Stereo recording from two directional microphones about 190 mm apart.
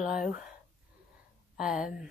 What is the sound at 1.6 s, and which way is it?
Speech, 5° right (ahead or behind).